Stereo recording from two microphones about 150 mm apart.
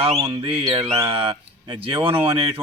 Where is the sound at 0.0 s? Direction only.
35° right (ahead or behind).